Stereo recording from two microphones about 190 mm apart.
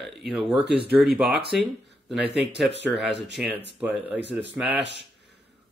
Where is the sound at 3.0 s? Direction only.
65° right (ahead or behind).